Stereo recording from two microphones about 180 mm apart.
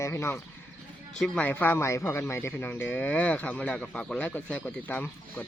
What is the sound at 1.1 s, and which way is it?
A man's voice, 5° left (ahead or behind).